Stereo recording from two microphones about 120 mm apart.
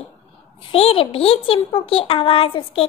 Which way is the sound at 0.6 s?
50° left (ahead or behind).